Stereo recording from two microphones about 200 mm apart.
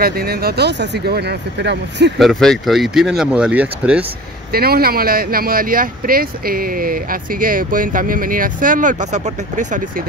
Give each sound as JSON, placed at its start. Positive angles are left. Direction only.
{"t": 0.0, "sound": "speech", "side_deg": -50}
{"t": 2.1, "sound": "speech", "side_deg": 0}
{"t": 4.5, "sound": "speech", "side_deg": -50}